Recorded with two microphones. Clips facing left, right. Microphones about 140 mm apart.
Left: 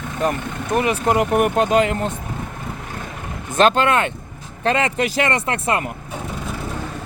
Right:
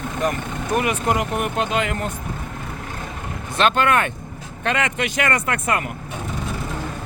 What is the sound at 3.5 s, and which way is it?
Speech, 35° left (ahead or behind).